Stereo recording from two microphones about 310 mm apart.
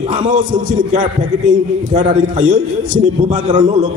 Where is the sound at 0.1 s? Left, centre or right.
Right.